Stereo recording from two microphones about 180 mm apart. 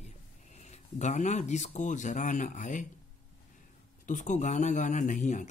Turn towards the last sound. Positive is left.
turn(degrees=40)  # may be behind; listen again after turning